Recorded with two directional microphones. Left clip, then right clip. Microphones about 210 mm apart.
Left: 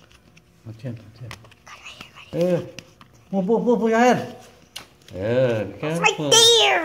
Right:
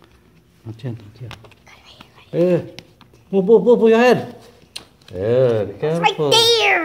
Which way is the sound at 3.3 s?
40° right (ahead or behind).